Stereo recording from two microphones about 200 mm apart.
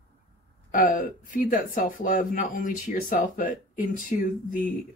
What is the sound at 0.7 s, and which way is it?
Speech, 45° left (ahead or behind).